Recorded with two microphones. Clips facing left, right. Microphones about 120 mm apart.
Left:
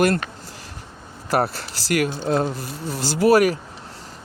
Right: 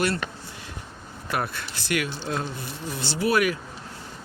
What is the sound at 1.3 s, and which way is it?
Speech, 40° left (ahead or behind).